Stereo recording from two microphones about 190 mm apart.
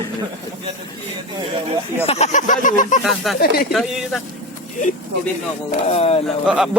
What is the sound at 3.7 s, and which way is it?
Speech, centre (ahead or behind).